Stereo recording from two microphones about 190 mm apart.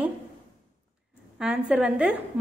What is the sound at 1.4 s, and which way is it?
Speech, 5° right (ahead or behind).